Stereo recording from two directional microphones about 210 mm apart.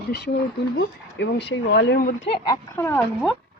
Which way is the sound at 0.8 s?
55° left (ahead or behind).